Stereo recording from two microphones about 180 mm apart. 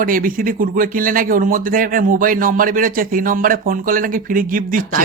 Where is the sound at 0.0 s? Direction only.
50° right (ahead or behind).